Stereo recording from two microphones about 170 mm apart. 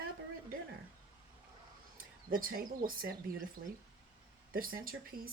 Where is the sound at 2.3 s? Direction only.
60° right (ahead or behind).